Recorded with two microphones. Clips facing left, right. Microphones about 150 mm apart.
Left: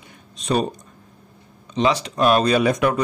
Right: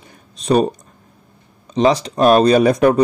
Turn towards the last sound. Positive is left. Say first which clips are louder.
# right 6 dB
turn(degrees=-35)  # may be behind; listen again after turning